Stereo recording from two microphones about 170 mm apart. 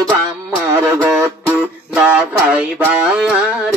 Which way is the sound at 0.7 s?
15° right (ahead or behind).